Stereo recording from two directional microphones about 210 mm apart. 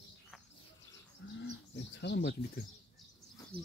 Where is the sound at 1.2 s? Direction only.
55° left (ahead or behind).